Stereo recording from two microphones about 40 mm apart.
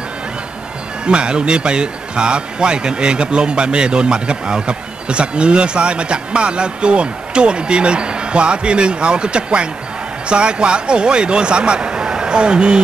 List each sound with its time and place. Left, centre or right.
1.0 s a man's voice: right